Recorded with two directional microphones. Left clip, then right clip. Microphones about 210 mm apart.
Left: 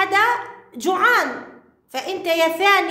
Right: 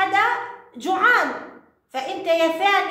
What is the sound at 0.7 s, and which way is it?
A woman's voice, 40° left (ahead or behind).